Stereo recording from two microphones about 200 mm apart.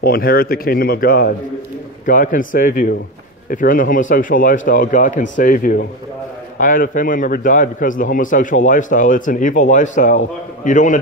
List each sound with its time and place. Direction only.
0.0 s a man's voice: 50° left (ahead or behind)